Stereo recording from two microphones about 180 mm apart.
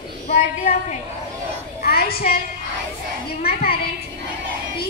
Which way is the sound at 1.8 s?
55° left (ahead or behind).